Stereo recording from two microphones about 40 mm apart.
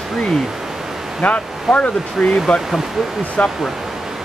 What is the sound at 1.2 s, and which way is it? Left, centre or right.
Speech, left.